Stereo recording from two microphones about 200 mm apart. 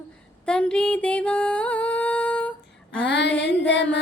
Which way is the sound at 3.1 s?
60° left (ahead or behind).